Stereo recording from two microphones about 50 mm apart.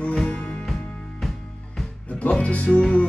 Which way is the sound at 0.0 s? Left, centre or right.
Centre.